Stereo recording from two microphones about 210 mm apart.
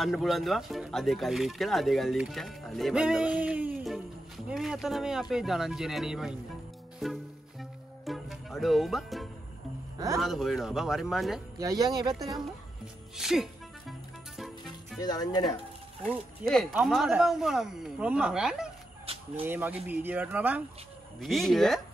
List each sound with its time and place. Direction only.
0.0 s speech: centre (ahead or behind)
8.0 s music: centre (ahead or behind)
10.1 s speech: centre (ahead or behind)
11.5 s speech: 15° right (ahead or behind)
13.2 s music: centre (ahead or behind)
15.0 s speech: 20° left (ahead or behind)
16.0 s speech: 5° left (ahead or behind)
19.1 s a sound: 25° right (ahead or behind)
19.4 s speech: 10° right (ahead or behind)